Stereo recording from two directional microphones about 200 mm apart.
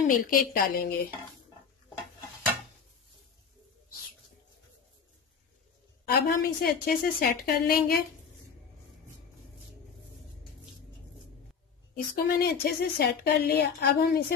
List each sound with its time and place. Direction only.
0.0 s speech: 45° left (ahead or behind)
6.0 s speech: 50° left (ahead or behind)
11.9 s speech: 45° left (ahead or behind)